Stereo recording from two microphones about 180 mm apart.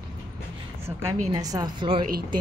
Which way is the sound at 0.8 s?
20° right (ahead or behind).